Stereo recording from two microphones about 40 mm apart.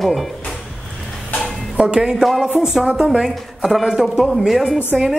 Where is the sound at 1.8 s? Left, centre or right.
Right.